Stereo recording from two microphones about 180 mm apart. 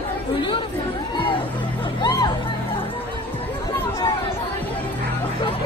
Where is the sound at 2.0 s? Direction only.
25° left (ahead or behind).